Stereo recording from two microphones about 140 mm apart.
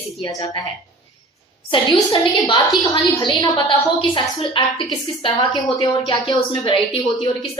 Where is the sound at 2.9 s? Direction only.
35° left (ahead or behind).